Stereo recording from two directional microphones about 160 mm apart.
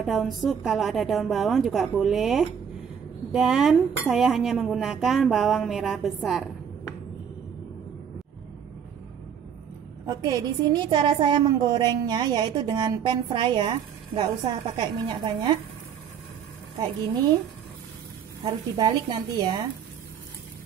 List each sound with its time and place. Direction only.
0.0 s speech: centre (ahead or behind)
10.0 s a woman's voice: 25° right (ahead or behind)
18.4 s a woman's voice: 25° right (ahead or behind)